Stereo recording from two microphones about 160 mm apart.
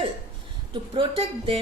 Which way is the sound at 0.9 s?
30° right (ahead or behind).